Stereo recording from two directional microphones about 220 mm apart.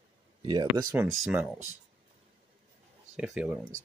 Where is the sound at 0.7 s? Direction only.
5° right (ahead or behind).